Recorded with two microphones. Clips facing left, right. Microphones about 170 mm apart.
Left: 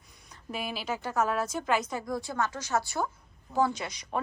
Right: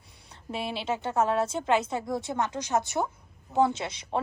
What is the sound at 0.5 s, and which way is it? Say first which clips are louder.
A woman's voice: right 3 dB; 25° right (ahead or behind).